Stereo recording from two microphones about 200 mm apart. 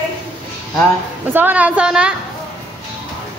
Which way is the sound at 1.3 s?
10° right (ahead or behind).